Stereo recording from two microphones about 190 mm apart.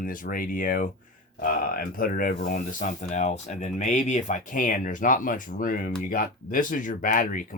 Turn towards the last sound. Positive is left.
turn(degrees=45)  # may be behind; listen again after turning